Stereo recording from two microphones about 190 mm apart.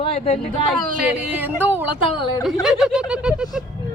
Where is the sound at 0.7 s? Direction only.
Centre (ahead or behind).